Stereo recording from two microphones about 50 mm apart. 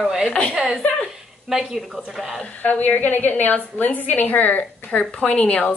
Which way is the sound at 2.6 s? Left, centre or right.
Left.